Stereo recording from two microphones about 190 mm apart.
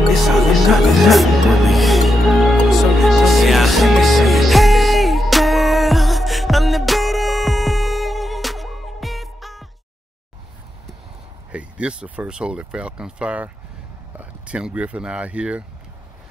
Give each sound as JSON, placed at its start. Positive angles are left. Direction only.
{"t": 0.1, "sound": "music", "side_deg": 0}
{"t": 11.5, "sound": "speech", "side_deg": -5}